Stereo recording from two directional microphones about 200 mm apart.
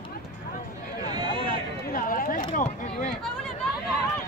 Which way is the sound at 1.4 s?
45° left (ahead or behind).